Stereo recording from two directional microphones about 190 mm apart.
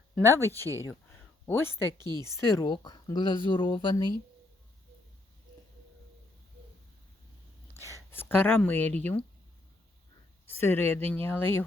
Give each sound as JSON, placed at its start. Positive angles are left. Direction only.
{"t": 0.2, "sound": "speech", "side_deg": 10}
{"t": 2.0, "sound": "speech", "side_deg": -20}
{"t": 2.2, "sound": "speech", "side_deg": 15}
{"t": 7.9, "sound": "speech", "side_deg": 10}
{"t": 10.5, "sound": "speech", "side_deg": 10}